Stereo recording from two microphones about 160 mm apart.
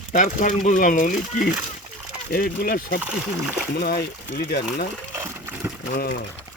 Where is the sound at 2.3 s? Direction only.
75° left (ahead or behind).